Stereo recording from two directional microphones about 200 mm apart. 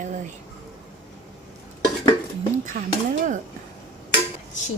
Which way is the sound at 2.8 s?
50° right (ahead or behind).